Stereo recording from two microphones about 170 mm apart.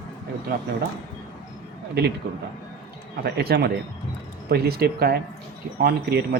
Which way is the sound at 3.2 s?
70° right (ahead or behind).